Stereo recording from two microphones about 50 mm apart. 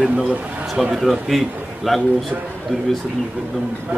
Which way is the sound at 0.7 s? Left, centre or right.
Centre.